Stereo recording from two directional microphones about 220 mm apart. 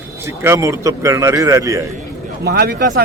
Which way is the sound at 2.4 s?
45° right (ahead or behind).